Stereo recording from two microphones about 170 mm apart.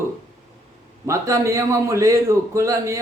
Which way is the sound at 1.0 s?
15° right (ahead or behind).